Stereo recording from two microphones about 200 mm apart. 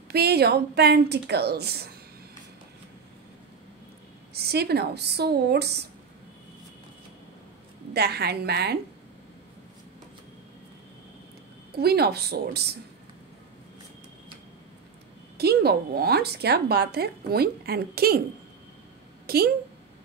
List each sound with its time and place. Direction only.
0.1 s a woman's voice: 55° right (ahead or behind)
4.3 s speech: 55° right (ahead or behind)
7.9 s a woman's voice: 55° right (ahead or behind)
11.7 s a woman's voice: 50° right (ahead or behind)
15.3 s a woman's voice: 55° right (ahead or behind)
19.2 s a woman's voice: 50° right (ahead or behind)